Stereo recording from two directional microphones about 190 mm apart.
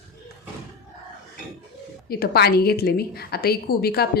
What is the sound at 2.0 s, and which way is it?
A woman's voice, 55° left (ahead or behind).